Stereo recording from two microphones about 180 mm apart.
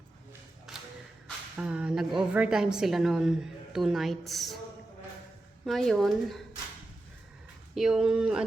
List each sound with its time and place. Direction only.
1.5 s a woman's voice: 5° right (ahead or behind)
5.6 s a woman's voice: centre (ahead or behind)
7.8 s a woman's voice: centre (ahead or behind)